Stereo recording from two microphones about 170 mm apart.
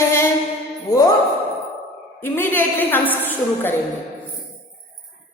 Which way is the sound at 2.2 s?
10° left (ahead or behind).